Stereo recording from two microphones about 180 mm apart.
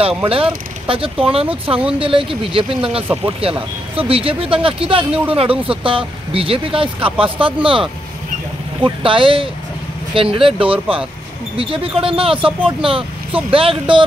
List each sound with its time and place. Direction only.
0.2 s speech: 30° right (ahead or behind)
8.8 s speech: 30° right (ahead or behind)